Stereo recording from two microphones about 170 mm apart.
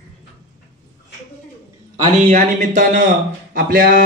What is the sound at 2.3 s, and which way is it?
Speech, 45° right (ahead or behind).